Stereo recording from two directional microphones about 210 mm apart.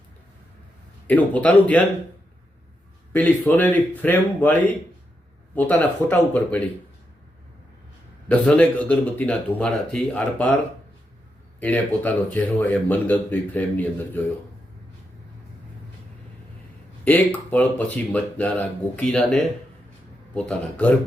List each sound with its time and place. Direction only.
1.0 s speech: 5° left (ahead or behind)
3.1 s speech: 10° left (ahead or behind)
8.3 s speech: 5° left (ahead or behind)
11.6 s speech: 10° left (ahead or behind)
17.1 s speech: 10° left (ahead or behind)